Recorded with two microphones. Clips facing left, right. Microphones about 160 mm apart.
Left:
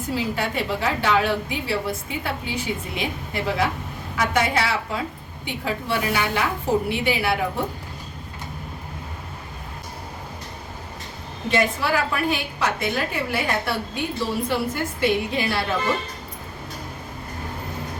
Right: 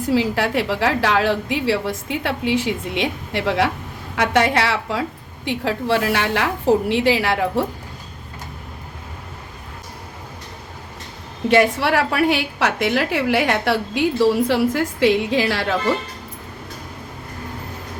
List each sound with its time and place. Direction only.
0.1 s a woman's voice: 90° right
4.1 s a woman's voice: 70° right (ahead or behind); by 7.6 s 90° right
11.4 s a woman's voice: 75° right (ahead or behind)